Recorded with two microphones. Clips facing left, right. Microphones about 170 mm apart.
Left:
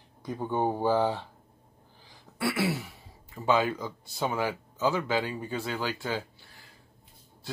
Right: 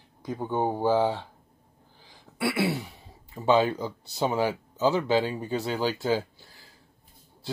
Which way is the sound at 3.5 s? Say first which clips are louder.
Right 4 dB; 35° right (ahead or behind).